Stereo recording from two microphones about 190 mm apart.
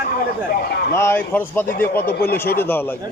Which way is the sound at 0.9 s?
10° left (ahead or behind).